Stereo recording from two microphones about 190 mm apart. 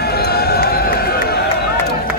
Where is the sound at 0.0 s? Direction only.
55° left (ahead or behind).